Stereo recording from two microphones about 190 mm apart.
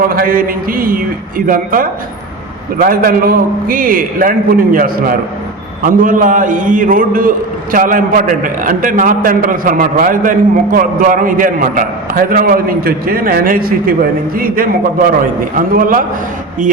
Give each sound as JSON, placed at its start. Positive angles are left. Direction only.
{"t": 0.1, "sound": "a man's voice", "side_deg": -50}